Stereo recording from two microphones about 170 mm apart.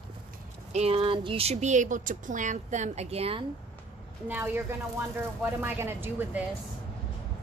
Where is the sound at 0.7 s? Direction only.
35° right (ahead or behind).